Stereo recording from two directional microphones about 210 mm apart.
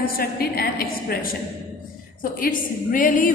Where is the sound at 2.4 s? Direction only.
40° left (ahead or behind).